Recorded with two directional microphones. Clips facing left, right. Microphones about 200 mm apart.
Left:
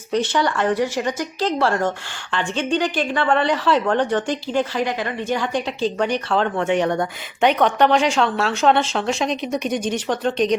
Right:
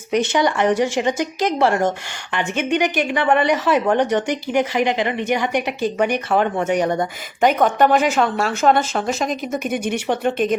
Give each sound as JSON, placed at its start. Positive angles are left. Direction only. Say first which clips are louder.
{"t": 0.1, "sound": "a woman's voice", "louder": "right 2 dB", "side_deg": -20}
{"t": 7.0, "sound": "a woman's voice", "louder": "right 1 dB", "side_deg": -5}